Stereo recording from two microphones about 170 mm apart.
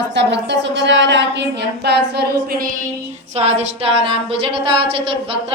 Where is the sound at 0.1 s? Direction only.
90° right.